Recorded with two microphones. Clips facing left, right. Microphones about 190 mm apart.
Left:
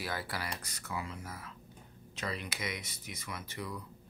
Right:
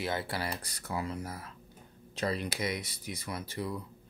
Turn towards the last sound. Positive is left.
turn(degrees=-30)  # may be behind; listen again after turning